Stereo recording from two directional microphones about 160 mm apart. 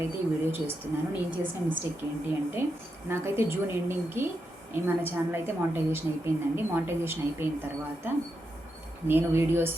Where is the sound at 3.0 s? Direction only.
15° right (ahead or behind).